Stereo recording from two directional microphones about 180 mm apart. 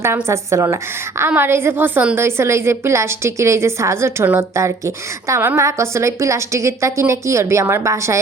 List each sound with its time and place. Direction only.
0.0 s a woman's voice: 15° right (ahead or behind)